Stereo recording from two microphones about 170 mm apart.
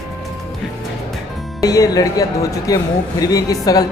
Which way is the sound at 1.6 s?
20° left (ahead or behind).